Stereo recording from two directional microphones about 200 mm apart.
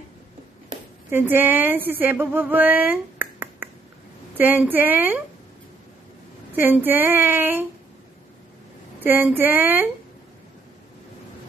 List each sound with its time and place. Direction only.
1.1 s a woman's voice: 10° right (ahead or behind)
6.5 s a woman's voice: 10° right (ahead or behind)
9.0 s a woman's voice: 10° right (ahead or behind)